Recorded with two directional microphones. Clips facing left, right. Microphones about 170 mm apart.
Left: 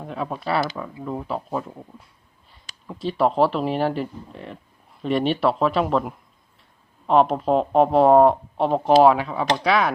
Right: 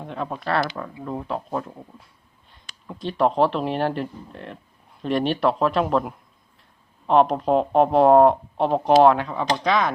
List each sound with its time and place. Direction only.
0.0 s speech: 5° left (ahead or behind)